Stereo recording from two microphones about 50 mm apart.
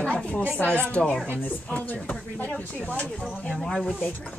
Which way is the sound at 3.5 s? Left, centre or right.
Centre.